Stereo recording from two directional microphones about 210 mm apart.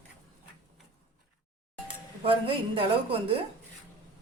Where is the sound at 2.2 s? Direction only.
25° right (ahead or behind).